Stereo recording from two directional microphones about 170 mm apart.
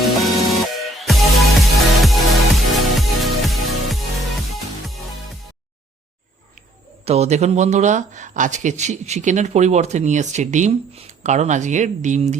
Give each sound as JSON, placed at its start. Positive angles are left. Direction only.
{"t": 0.0, "sound": "music", "side_deg": 0}
{"t": 7.0, "sound": "speech", "side_deg": -40}